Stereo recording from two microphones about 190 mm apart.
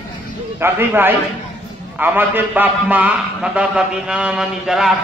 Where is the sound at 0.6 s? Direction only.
10° right (ahead or behind).